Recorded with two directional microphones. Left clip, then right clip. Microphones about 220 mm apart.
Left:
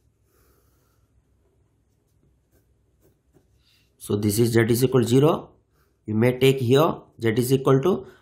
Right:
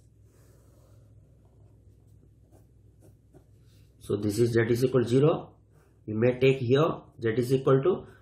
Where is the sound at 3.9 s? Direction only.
50° left (ahead or behind).